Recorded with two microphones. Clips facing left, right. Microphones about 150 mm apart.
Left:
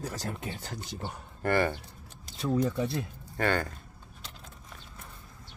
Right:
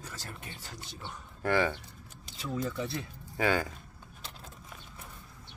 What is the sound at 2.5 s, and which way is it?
Speech, 25° left (ahead or behind).